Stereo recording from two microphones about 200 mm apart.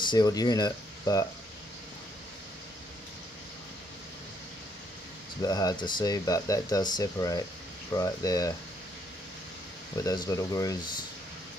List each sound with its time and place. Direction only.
0.0 s speech: 20° left (ahead or behind)
5.4 s speech: 20° left (ahead or behind)
9.9 s speech: 20° left (ahead or behind)